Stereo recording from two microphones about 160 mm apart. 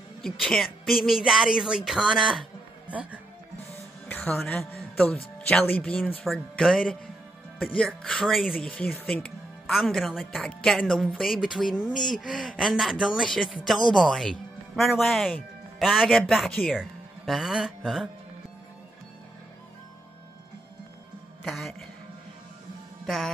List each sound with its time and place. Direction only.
0.2 s speech: centre (ahead or behind)
4.1 s a woman's voice: 10° left (ahead or behind)
21.5 s speech: centre (ahead or behind)
23.0 s music: centre (ahead or behind)